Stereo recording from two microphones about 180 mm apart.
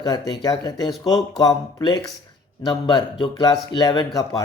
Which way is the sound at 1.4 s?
20° left (ahead or behind).